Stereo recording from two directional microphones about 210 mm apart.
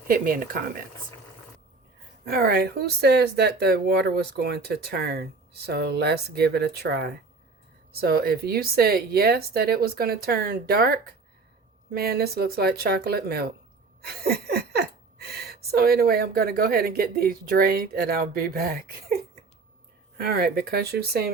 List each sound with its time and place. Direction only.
0.1 s speech: 40° right (ahead or behind)
2.2 s speech: 45° right (ahead or behind)